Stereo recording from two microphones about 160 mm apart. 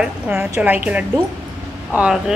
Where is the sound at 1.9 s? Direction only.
5° right (ahead or behind).